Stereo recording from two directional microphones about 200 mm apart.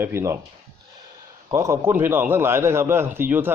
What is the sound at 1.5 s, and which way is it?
A man's voice, 15° right (ahead or behind).